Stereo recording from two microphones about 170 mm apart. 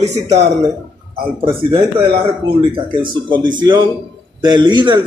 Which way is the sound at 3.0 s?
25° right (ahead or behind).